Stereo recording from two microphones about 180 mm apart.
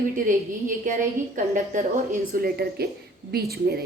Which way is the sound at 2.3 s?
60° right (ahead or behind).